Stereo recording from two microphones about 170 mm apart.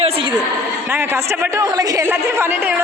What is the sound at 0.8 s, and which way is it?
A man's voice, 15° right (ahead or behind).